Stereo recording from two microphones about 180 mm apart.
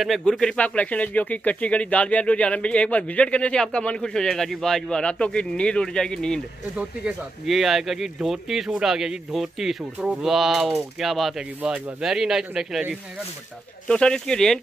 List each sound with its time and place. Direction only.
0.0 s speech: centre (ahead or behind)